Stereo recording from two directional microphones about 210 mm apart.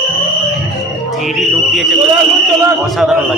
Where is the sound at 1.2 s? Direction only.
Centre (ahead or behind).